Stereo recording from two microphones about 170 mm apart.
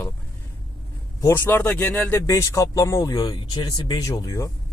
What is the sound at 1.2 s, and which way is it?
Speech, 15° left (ahead or behind).